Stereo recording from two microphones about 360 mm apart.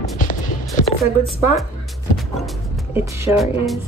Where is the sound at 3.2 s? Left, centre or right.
Centre.